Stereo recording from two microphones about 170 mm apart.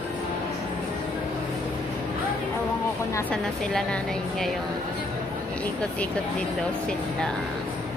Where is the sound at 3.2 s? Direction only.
5° left (ahead or behind).